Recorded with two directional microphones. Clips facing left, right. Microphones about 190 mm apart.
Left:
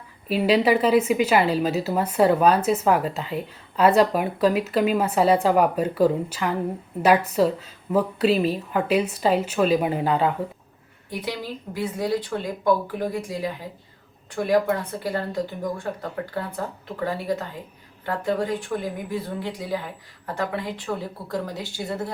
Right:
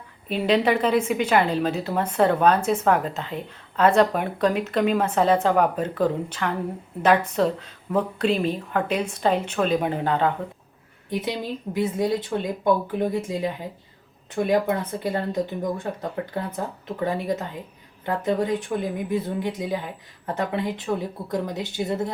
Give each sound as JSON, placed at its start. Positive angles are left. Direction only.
{"t": 0.3, "sound": "a woman's voice", "side_deg": 5}
{"t": 11.1, "sound": "a woman's voice", "side_deg": -20}